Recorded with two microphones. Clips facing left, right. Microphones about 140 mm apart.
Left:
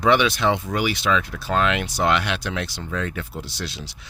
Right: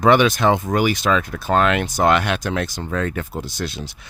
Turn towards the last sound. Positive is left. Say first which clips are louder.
# right 5 dB
turn(degrees=-50)  # may be behind; listen again after turning